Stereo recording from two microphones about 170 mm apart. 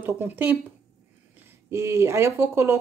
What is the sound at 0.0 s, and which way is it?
Speech, 10° right (ahead or behind).